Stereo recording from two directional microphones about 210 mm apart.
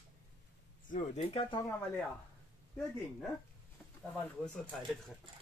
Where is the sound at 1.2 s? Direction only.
25° left (ahead or behind).